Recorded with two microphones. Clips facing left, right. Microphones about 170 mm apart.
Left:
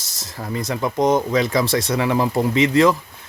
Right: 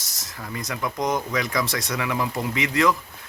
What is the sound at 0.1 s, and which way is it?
Speech, 30° left (ahead or behind).